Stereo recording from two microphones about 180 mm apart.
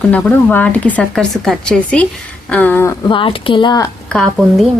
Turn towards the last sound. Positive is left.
turn(degrees=5)  # may be behind; listen again after turning